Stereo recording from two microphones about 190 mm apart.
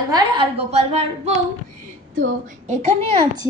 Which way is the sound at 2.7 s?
35° right (ahead or behind).